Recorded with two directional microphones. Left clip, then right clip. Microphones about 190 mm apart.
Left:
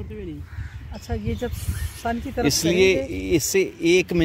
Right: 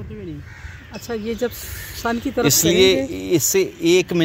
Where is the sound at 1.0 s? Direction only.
45° right (ahead or behind).